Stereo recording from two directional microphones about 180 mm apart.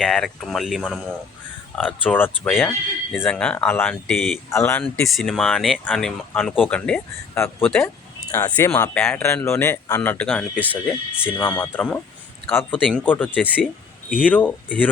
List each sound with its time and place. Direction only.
0.0 s speech: 5° left (ahead or behind)
4.4 s speech: 15° left (ahead or behind)
8.4 s speech: 20° left (ahead or behind)
10.8 s speech: 5° right (ahead or behind)
11.4 s speech: 10° left (ahead or behind)